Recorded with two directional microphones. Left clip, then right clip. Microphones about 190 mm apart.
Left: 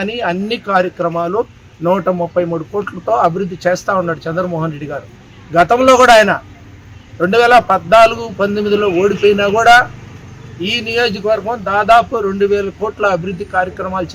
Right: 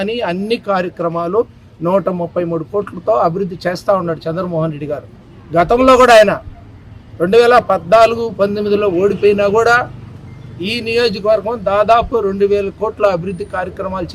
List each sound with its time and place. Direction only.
0.0 s a man's voice: 30° right (ahead or behind)